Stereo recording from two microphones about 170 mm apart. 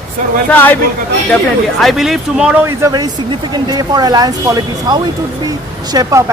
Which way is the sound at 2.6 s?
20° right (ahead or behind).